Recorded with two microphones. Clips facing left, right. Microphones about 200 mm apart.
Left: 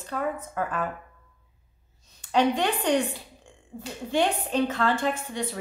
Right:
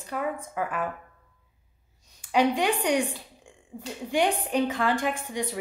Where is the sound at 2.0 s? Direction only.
10° right (ahead or behind).